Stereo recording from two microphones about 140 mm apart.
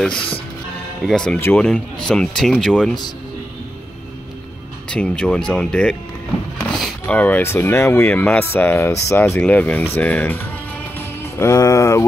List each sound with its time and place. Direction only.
1.0 s speech: 5° left (ahead or behind)
4.8 s speech: 5° left (ahead or behind)
11.0 s music: 20° left (ahead or behind)